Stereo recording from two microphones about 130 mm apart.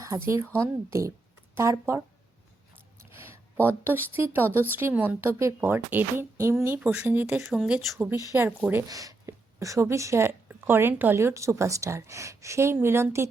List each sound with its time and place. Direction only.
0.6 s a woman's voice: 25° right (ahead or behind)
3.7 s speech: 15° right (ahead or behind)
6.7 s speech: 10° right (ahead or behind)
7.9 s a woman's voice: 20° right (ahead or behind)
8.4 s speech: 10° right (ahead or behind)
8.9 s a woman's voice: 25° right (ahead or behind)